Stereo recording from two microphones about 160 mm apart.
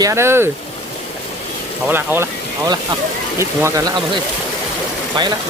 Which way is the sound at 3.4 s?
20° right (ahead or behind).